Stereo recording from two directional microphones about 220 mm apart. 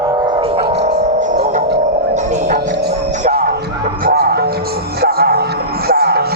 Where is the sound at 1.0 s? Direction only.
35° right (ahead or behind).